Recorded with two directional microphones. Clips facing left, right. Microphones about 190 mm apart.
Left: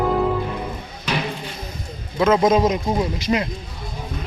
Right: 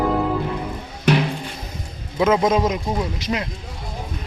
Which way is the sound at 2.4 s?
Centre (ahead or behind).